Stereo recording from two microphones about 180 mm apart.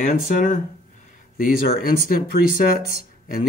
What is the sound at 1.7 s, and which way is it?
Speech, 55° left (ahead or behind).